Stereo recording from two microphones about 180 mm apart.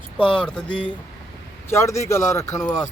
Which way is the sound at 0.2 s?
5° left (ahead or behind).